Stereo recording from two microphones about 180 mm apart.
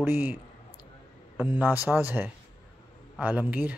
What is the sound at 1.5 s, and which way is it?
Speech, 10° right (ahead or behind).